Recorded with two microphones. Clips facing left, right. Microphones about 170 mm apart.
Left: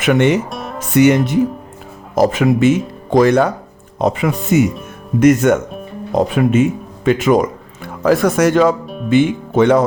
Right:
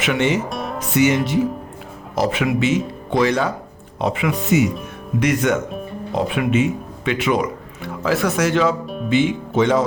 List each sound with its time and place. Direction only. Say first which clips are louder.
0.0 s speech: left 6 dB; 55° left (ahead or behind)
0.5 s music: even; centre (ahead or behind)
0.9 s speech: left 6 dB; 55° left (ahead or behind)